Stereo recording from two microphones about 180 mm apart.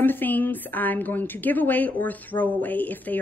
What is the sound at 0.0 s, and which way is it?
Speech, 10° left (ahead or behind).